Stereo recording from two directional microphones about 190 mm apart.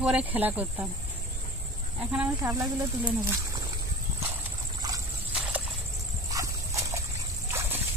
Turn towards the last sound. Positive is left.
turn(degrees=-15)  # may be behind; listen again after turning